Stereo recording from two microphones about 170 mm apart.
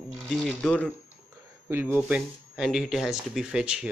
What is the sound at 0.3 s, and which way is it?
Speech, centre (ahead or behind).